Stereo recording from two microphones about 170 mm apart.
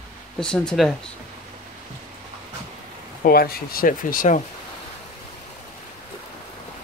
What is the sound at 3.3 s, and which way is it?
Speech, 60° left (ahead or behind).